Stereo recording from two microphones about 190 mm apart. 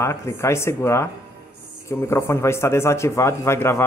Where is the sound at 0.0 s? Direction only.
15° left (ahead or behind).